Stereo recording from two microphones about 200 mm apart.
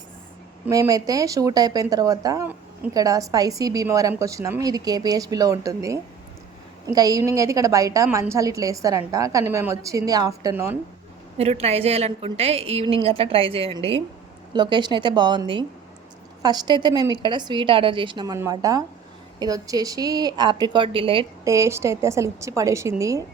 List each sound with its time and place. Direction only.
0.7 s speech: 15° right (ahead or behind)
11.3 s a woman's voice: 30° right (ahead or behind)
21.4 s speech: 15° right (ahead or behind)